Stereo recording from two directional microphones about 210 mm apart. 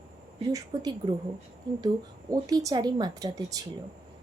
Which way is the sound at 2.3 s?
20° right (ahead or behind).